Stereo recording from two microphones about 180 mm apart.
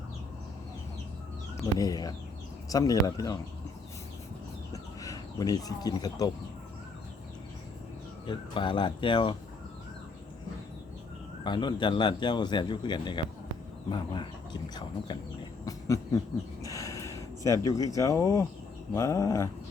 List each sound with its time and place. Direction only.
1.6 s a man's voice: 20° left (ahead or behind)
4.7 s bird: 20° left (ahead or behind)
8.3 s a man's voice: 30° left (ahead or behind)
11.4 s a man's voice: 25° left (ahead or behind)
15.6 s a sound: 20° left (ahead or behind)
17.9 s speech: 15° left (ahead or behind)